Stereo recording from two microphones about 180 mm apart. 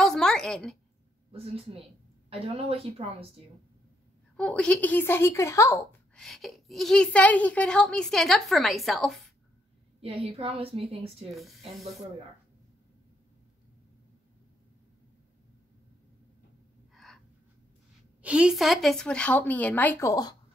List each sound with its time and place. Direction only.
0.0 s a sound: centre (ahead or behind)
1.3 s a woman's voice: 35° right (ahead or behind)
4.4 s speech: 5° left (ahead or behind)
6.1 s a child's voice: centre (ahead or behind)
10.0 s a woman's voice: 35° right (ahead or behind)
11.3 s a child's voice: centre (ahead or behind)
16.9 s gasp: centre (ahead or behind)
18.2 s speech: 5° right (ahead or behind); by 20.3 s 20° left (ahead or behind)